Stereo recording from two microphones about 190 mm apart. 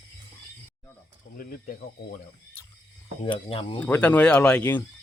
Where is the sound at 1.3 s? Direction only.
50° left (ahead or behind).